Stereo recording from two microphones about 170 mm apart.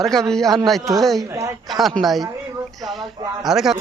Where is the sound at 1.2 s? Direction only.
20° right (ahead or behind).